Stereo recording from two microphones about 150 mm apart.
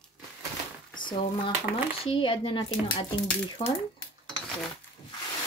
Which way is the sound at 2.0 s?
35° left (ahead or behind).